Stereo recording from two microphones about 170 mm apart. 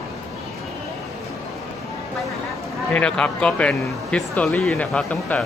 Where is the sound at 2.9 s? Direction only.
5° left (ahead or behind).